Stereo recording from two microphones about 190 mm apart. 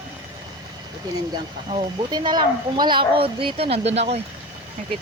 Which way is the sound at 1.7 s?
25° right (ahead or behind).